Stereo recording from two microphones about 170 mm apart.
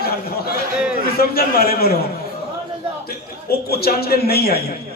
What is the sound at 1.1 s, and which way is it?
Speech, 65° left (ahead or behind).